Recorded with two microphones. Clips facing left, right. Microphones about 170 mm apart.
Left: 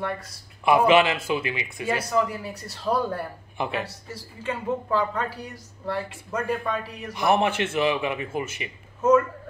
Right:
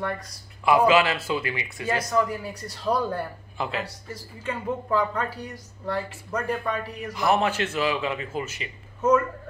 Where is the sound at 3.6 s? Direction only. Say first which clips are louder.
Left 1 dB; 20° left (ahead or behind).